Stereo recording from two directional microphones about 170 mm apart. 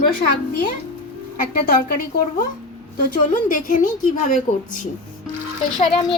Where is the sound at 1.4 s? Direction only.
60° left (ahead or behind).